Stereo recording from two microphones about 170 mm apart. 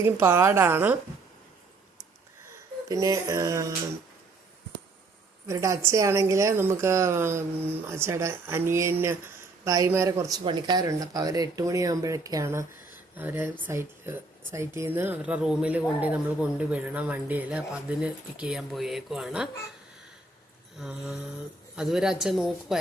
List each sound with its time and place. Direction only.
0.0 s speech: 15° right (ahead or behind)
2.9 s a sound: 20° right (ahead or behind)
5.5 s speech: 20° right (ahead or behind)
20.7 s a woman's voice: 5° right (ahead or behind)